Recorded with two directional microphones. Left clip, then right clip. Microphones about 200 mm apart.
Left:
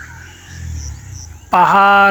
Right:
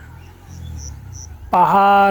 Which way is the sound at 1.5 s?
5° right (ahead or behind).